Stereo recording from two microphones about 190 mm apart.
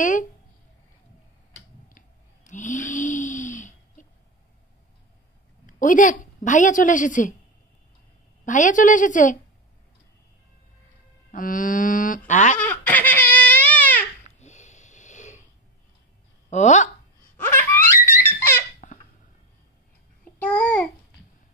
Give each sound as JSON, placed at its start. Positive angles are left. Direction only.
{"t": 0.0, "sound": "speech", "side_deg": 40}
{"t": 2.0, "sound": "a sound", "side_deg": 40}
{"t": 5.7, "sound": "a woman's voice", "side_deg": 45}
{"t": 8.5, "sound": "a woman's voice", "side_deg": 40}
{"t": 11.3, "sound": "a woman's voice", "side_deg": 45}
{"t": 12.5, "sound": "crying", "side_deg": 10}
{"t": 14.4, "sound": "wheeze", "side_deg": 40}
{"t": 16.4, "sound": "speech", "side_deg": 40}
{"t": 17.4, "sound": "baby laughter", "side_deg": 10}
{"t": 18.8, "sound": "a sound", "side_deg": 45}
{"t": 20.3, "sound": "babbling", "side_deg": 5}